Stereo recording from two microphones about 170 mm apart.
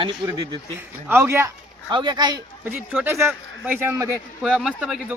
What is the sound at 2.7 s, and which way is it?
Speech, 10° right (ahead or behind).